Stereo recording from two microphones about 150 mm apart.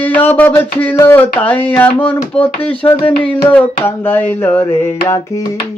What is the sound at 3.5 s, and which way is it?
Music, 10° left (ahead or behind).